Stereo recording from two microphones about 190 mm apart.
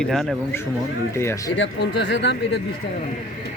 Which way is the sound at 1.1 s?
15° left (ahead or behind).